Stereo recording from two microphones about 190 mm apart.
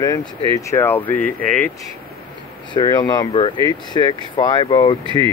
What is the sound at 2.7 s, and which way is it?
Speech, 20° left (ahead or behind).